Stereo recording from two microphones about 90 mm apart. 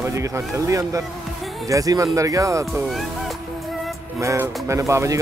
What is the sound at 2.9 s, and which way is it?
Music, centre (ahead or behind).